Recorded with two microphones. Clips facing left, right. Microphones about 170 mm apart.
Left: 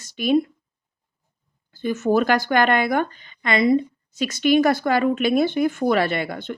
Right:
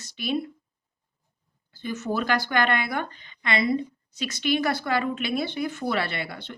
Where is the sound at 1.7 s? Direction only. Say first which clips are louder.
Left 9 dB; 50° left (ahead or behind).